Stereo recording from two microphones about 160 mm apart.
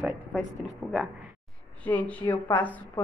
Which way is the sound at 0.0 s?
5° right (ahead or behind).